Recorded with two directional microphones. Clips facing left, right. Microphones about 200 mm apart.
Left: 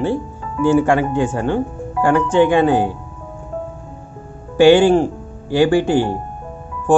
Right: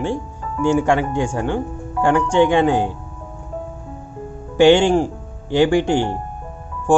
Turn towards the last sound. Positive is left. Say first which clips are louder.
# left 1 dB
turn(degrees=-15)  # may be behind; listen again after turning